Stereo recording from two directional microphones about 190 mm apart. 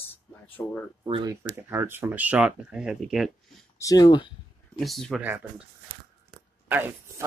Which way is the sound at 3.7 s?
20° left (ahead or behind).